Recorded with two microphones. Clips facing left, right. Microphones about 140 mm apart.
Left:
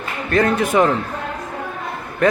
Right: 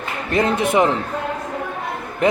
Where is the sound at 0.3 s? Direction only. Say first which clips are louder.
Left 1 dB; 20° right (ahead or behind).